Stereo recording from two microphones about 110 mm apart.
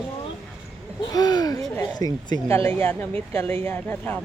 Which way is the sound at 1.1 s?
35° left (ahead or behind).